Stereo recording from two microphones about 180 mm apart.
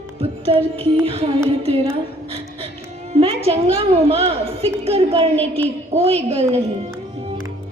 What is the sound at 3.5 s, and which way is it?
A woman's voice, 35° right (ahead or behind).